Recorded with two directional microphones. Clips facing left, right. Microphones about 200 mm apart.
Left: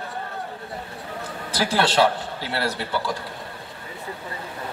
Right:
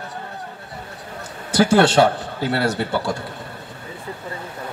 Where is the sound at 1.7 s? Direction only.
55° right (ahead or behind).